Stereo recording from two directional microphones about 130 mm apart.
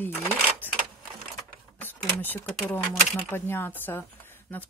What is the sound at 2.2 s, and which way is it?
Speech, 15° left (ahead or behind).